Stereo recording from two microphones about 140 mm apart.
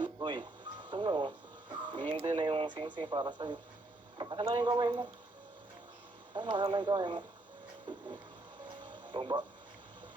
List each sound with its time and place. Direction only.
0.0 s radio: 35° right (ahead or behind)
1.9 s speech: 35° right (ahead or behind)
6.3 s speech: 35° right (ahead or behind)
8.9 s radio: 35° right (ahead or behind)